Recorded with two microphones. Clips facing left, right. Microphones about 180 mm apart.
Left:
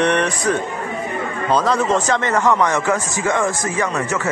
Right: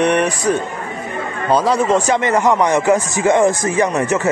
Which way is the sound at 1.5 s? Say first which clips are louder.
Right 3 dB; 10° right (ahead or behind).